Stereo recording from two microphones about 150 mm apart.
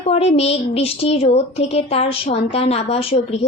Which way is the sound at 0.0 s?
40° left (ahead or behind).